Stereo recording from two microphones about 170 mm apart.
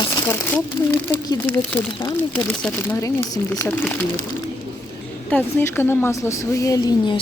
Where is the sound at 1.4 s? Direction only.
10° left (ahead or behind).